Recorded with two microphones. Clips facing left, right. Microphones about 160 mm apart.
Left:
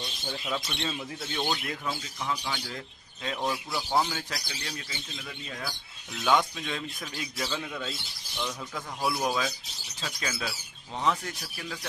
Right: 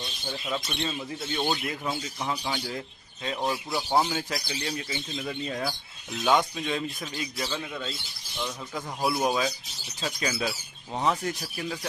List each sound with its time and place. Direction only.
0.3 s speech: 5° right (ahead or behind)
1.9 s speech: 25° right (ahead or behind)
2.3 s speech: 35° right (ahead or behind)
3.3 s speech: 10° right (ahead or behind)
5.2 s speech: 40° right (ahead or behind)
6.2 s speech: 15° right (ahead or behind)
7.2 s speech: 5° right (ahead or behind); by 11.8 s 20° right (ahead or behind)